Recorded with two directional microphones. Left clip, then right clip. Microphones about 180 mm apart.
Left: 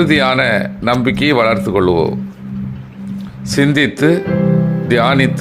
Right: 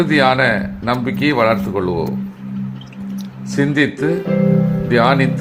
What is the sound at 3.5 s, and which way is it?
A man's voice, 25° left (ahead or behind).